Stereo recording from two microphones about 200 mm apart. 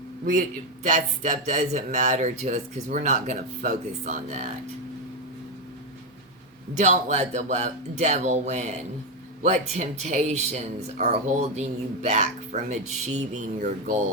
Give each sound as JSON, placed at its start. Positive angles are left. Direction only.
{"t": 0.3, "sound": "speech", "side_deg": -40}
{"t": 6.7, "sound": "speech", "side_deg": -35}